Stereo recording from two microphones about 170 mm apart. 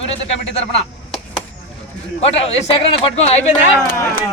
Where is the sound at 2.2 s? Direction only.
35° left (ahead or behind).